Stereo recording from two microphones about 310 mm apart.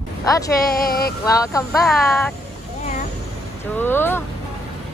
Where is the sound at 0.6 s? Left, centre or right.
Left.